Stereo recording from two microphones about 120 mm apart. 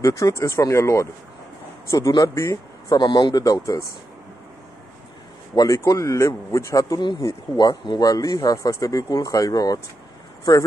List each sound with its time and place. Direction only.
0.0 s speech: 25° left (ahead or behind)
5.6 s speech: 30° left (ahead or behind)